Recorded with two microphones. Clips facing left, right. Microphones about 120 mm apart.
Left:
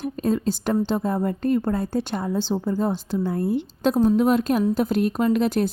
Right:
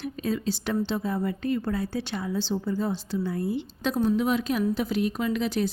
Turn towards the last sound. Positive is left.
turn(degrees=50)  # may be behind; listen again after turning